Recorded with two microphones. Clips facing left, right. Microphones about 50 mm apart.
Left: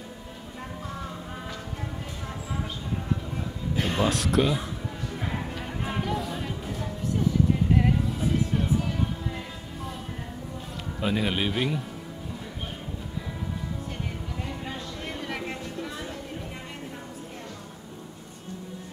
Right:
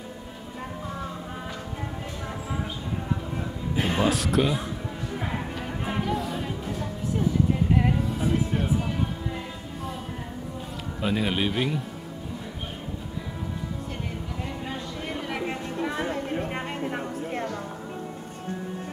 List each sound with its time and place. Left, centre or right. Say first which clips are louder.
3.7 s speech: right 2 dB; centre
5.1 s music: right 2 dB; centre
7.7 s music: even; centre
8.5 s music: even; centre
11.0 s speech: right 1 dB; centre
14.7 s a sound: right 2 dB; centre
15.8 s a sound: right 7 dB; right